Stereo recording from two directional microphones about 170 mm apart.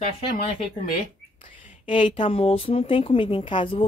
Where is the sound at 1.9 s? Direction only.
30° left (ahead or behind).